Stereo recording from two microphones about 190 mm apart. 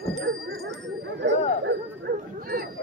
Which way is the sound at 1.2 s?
65° right (ahead or behind).